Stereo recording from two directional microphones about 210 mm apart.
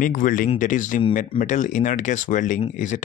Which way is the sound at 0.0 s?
40° left (ahead or behind).